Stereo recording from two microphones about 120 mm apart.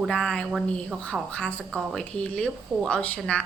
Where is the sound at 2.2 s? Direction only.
5° left (ahead or behind).